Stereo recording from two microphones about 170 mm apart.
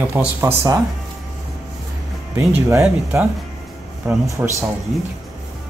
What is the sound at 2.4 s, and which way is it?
Speech, 15° right (ahead or behind).